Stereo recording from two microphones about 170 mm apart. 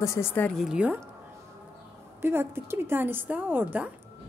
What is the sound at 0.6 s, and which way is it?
Speech, 5° right (ahead or behind).